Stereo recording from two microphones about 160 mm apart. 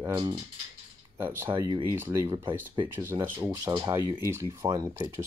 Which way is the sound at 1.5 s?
30° right (ahead or behind).